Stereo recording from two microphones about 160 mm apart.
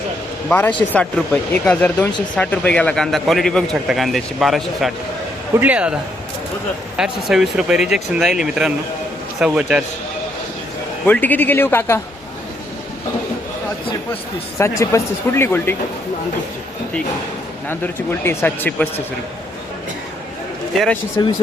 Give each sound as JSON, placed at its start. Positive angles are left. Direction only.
{"t": 0.4, "sound": "speech", "side_deg": 10}
{"t": 11.0, "sound": "speech", "side_deg": 10}
{"t": 14.6, "sound": "speech", "side_deg": 15}
{"t": 18.2, "sound": "speech", "side_deg": 15}
{"t": 20.7, "sound": "speech", "side_deg": 5}